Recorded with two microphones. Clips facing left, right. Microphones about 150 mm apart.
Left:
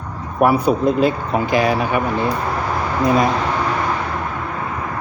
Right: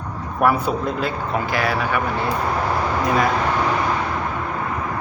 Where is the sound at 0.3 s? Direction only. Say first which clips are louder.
Left 4 dB; 15° left (ahead or behind).